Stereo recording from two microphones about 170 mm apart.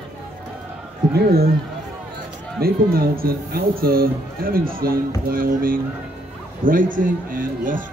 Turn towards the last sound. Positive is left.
turn(degrees=-55)  # may be behind; listen again after turning